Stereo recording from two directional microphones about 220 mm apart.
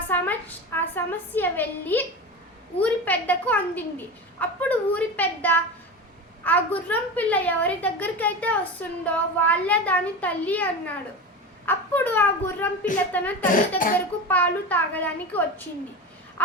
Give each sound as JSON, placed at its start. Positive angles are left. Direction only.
{"t": 0.1, "sound": "a sound", "side_deg": 10}
{"t": 2.8, "sound": "a woman's voice", "side_deg": 5}
{"t": 13.5, "sound": "speech", "side_deg": 35}
{"t": 14.3, "sound": "a woman's voice", "side_deg": 5}